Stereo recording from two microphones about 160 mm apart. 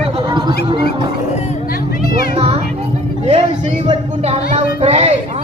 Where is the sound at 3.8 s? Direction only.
40° right (ahead or behind).